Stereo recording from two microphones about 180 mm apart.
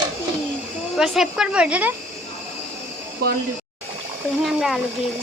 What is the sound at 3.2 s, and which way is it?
Speech, 60° right (ahead or behind).